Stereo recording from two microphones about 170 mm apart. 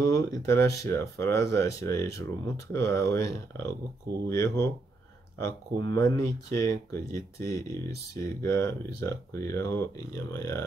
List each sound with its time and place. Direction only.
0.0 s speech: 20° left (ahead or behind)
5.9 s speech: 20° left (ahead or behind)